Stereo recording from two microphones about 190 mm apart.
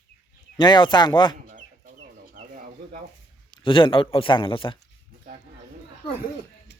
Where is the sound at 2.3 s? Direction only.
45° right (ahead or behind).